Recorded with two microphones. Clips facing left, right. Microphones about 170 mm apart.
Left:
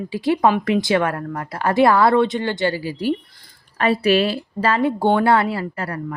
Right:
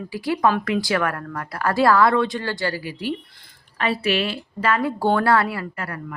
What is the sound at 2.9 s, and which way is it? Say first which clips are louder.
A woman's voice: left 6 dB; 45° left (ahead or behind).